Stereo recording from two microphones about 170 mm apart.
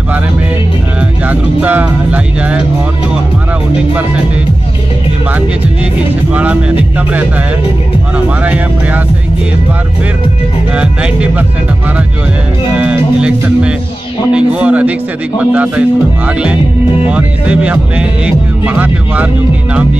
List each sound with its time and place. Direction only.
1.3 s speech: 10° right (ahead or behind)
6.3 s speech: 10° right (ahead or behind)
10.7 s speech: 5° right (ahead or behind)
12.7 s speech: 5° right (ahead or behind)
17.1 s speech: 5° right (ahead or behind)